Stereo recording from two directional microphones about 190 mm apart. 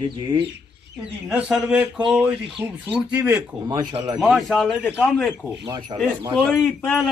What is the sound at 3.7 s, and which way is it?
Speech, 20° right (ahead or behind).